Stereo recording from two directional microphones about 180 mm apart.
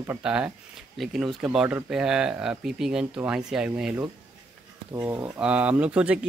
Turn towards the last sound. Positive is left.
turn(degrees=-5)  # may be behind; listen again after turning